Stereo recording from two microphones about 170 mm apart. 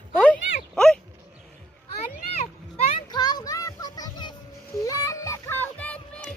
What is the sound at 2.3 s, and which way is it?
Children playing, 35° left (ahead or behind).